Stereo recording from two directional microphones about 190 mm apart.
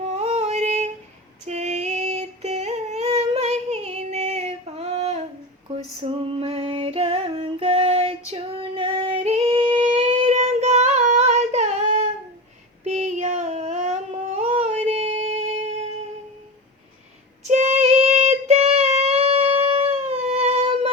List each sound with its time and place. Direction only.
0.1 s a sound: 35° right (ahead or behind)
5.6 s female singing: 30° right (ahead or behind)
12.8 s child singing: 35° right (ahead or behind)
14.3 s music: 35° right (ahead or behind)
17.5 s child singing: 35° right (ahead or behind)